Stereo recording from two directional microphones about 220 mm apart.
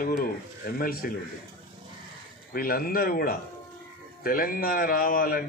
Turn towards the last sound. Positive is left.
turn(degrees=40)  # may be behind; listen again after turning